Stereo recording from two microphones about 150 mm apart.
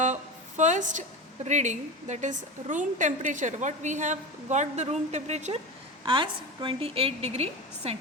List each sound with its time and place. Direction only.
0.0 s a sound: 55° right (ahead or behind)
1.5 s a woman's voice: 50° right (ahead or behind)
6.1 s a woman's voice: 35° right (ahead or behind)